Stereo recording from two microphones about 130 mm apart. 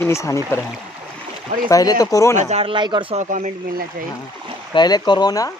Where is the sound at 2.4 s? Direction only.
55° right (ahead or behind).